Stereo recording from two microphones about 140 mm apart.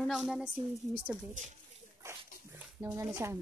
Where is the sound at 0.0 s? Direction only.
Centre (ahead or behind).